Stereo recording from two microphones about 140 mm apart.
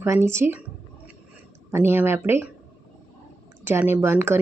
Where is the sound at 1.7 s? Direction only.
15° right (ahead or behind).